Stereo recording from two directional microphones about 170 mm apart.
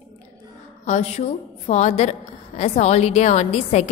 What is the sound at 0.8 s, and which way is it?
A woman's voice, 40° left (ahead or behind).